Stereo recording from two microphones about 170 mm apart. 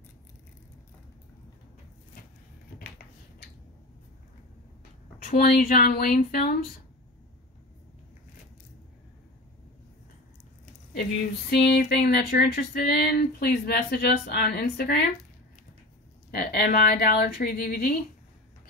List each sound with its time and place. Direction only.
5.4 s speech: 60° left (ahead or behind)
11.5 s speech: 70° left (ahead or behind)
16.3 s speech: 70° left (ahead or behind)